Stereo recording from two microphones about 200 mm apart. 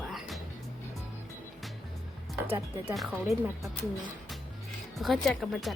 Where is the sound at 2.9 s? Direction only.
Centre (ahead or behind).